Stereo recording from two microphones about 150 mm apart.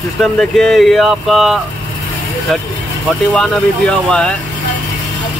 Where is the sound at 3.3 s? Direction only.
5° left (ahead or behind).